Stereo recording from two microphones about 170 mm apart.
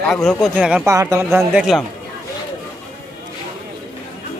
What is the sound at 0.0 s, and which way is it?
Speech, 5° left (ahead or behind).